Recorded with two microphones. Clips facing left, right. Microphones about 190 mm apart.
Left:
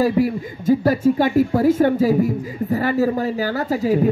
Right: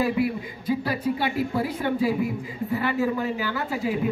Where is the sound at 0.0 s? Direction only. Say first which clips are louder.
Left 6 dB; 45° left (ahead or behind).